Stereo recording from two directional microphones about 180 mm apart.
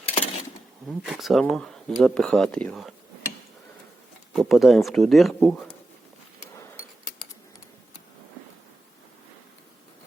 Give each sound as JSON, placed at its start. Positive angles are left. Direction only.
{"t": 0.1, "sound": "a sound", "side_deg": 35}
{"t": 0.9, "sound": "speech", "side_deg": 0}
{"t": 4.4, "sound": "speech", "side_deg": 0}